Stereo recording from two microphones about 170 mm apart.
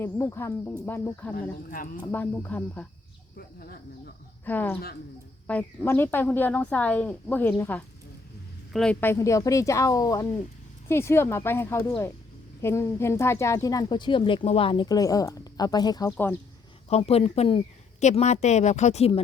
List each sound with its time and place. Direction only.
0.0 s a woman's voice: 15° left (ahead or behind)
3.3 s speech: 60° left (ahead or behind)
4.4 s a woman's voice: 10° left (ahead or behind)
17.0 s speech: 35° left (ahead or behind)